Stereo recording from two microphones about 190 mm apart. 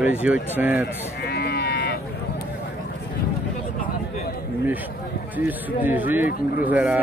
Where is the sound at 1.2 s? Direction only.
55° left (ahead or behind).